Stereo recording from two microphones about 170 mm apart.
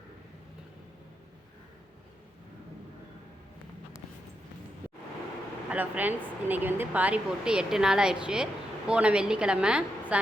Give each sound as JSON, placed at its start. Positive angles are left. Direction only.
{"t": 5.6, "sound": "a woman's voice", "side_deg": -10}